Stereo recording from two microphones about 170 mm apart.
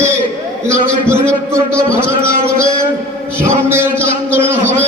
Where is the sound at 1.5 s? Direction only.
15° right (ahead or behind).